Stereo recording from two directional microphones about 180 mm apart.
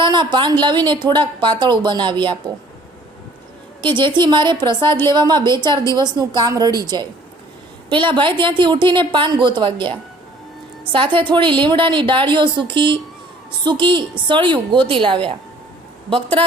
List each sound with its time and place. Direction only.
0.0 s speech: 25° right (ahead or behind)
3.8 s speech: 25° right (ahead or behind)
10.9 s speech: 30° right (ahead or behind)